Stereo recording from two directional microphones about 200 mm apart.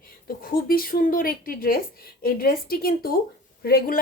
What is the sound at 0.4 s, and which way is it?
Speech, 45° left (ahead or behind).